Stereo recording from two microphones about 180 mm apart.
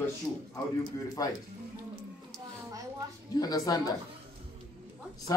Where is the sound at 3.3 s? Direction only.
20° left (ahead or behind).